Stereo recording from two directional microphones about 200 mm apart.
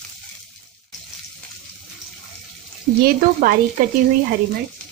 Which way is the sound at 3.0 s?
45° right (ahead or behind).